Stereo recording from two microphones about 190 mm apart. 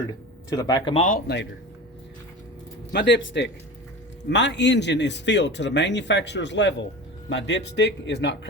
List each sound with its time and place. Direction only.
0.5 s speech: 20° left (ahead or behind)
0.9 s speech: 40° left (ahead or behind)
2.9 s speech: 65° left (ahead or behind)